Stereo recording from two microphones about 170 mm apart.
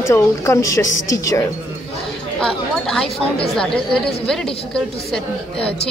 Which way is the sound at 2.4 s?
5° left (ahead or behind).